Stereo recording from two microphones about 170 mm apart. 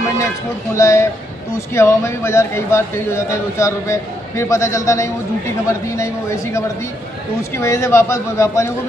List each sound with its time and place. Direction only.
0.7 s a man's voice: 15° left (ahead or behind)